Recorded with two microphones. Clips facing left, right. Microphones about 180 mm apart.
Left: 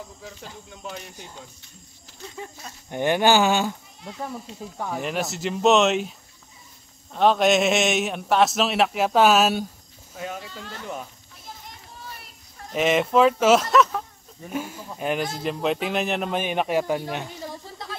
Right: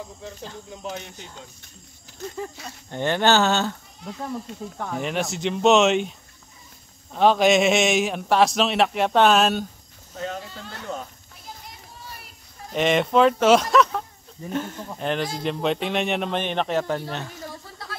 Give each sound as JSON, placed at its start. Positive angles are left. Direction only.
{"t": 0.2, "sound": "speech", "side_deg": 5}
{"t": 2.2, "sound": "speech", "side_deg": -45}
{"t": 2.9, "sound": "speech", "side_deg": 15}
{"t": 4.7, "sound": "a man's voice", "side_deg": 0}
{"t": 12.7, "sound": "speech", "side_deg": 5}